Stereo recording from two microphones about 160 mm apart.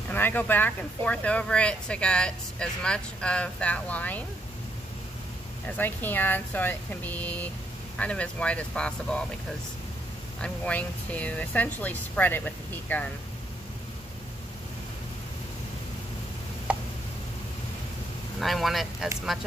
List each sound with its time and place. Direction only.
0.1 s speech: 10° left (ahead or behind)
5.7 s speech: 10° left (ahead or behind)
10.4 s speech: 10° left (ahead or behind)
18.4 s speech: centre (ahead or behind)